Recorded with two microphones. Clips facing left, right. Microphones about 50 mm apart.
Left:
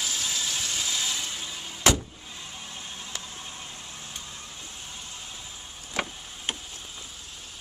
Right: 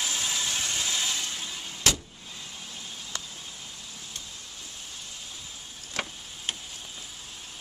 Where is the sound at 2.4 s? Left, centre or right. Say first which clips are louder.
Left 2 dB; centre; by 3.8 s left.